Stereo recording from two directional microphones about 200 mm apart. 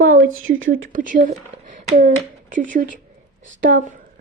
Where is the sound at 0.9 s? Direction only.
40° right (ahead or behind).